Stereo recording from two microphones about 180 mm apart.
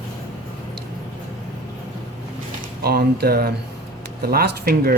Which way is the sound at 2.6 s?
60° right (ahead or behind).